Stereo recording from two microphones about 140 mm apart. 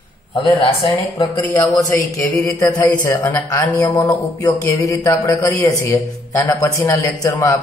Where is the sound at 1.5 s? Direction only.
25° left (ahead or behind).